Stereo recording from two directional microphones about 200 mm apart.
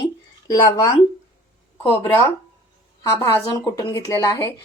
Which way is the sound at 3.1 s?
15° left (ahead or behind).